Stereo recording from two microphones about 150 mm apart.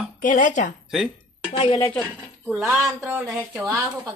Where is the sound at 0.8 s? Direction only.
5° right (ahead or behind).